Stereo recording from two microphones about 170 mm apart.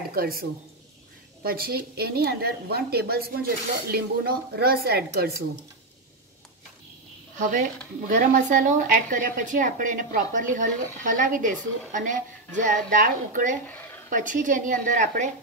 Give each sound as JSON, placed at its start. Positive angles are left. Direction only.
{"t": 0.1, "sound": "a woman's voice", "side_deg": -60}
{"t": 8.1, "sound": "speech", "side_deg": -50}
{"t": 13.7, "sound": "a sound", "side_deg": 10}
{"t": 14.1, "sound": "speech", "side_deg": -50}